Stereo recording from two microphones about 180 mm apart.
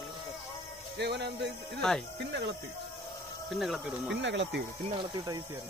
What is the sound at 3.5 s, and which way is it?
Speech, centre (ahead or behind).